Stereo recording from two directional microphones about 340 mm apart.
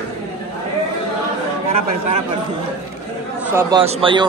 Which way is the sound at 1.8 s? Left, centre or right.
Right.